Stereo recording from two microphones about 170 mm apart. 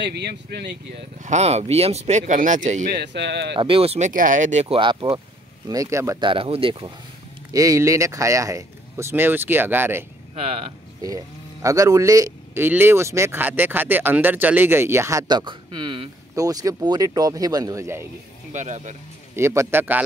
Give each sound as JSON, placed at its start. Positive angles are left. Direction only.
{"t": 0.0, "sound": "speech", "side_deg": -80}
{"t": 1.2, "sound": "speech", "side_deg": -40}
{"t": 2.9, "sound": "speech", "side_deg": -80}
{"t": 3.5, "sound": "speech", "side_deg": -30}
{"t": 4.1, "sound": "speech", "side_deg": -50}
{"t": 5.7, "sound": "speech", "side_deg": -20}
{"t": 7.5, "sound": "speech", "side_deg": -20}
{"t": 10.3, "sound": "speech", "side_deg": -35}
{"t": 11.6, "sound": "speech", "side_deg": -20}
{"t": 18.5, "sound": "speech", "side_deg": -45}
{"t": 19.3, "sound": "speech", "side_deg": -15}